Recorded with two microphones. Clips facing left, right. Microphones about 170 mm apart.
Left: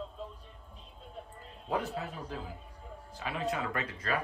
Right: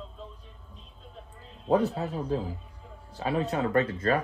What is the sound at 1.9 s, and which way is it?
Speech, 35° right (ahead or behind).